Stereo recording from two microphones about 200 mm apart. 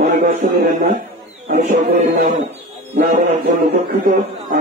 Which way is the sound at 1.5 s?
40° right (ahead or behind).